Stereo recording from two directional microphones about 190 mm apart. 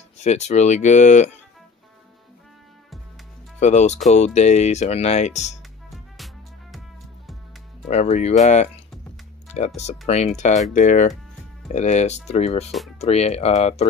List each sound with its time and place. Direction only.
0.2 s speech: 35° left (ahead or behind)
3.5 s speech: 35° left (ahead or behind)
6.1 s music: centre (ahead or behind)
7.9 s speech: 35° left (ahead or behind)
9.8 s speech: 35° left (ahead or behind)